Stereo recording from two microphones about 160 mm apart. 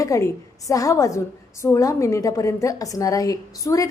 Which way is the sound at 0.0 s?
20° left (ahead or behind).